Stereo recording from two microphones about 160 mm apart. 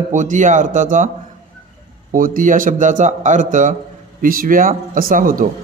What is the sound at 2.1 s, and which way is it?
A man's voice, 60° right (ahead or behind).